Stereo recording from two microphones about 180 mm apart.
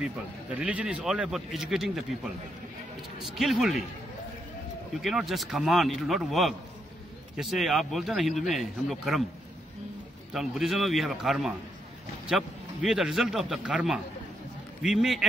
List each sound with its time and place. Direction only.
0.6 s speech: 5° right (ahead or behind)
3.3 s speech: centre (ahead or behind)
5.0 s speech: centre (ahead or behind)
10.3 s speech: centre (ahead or behind)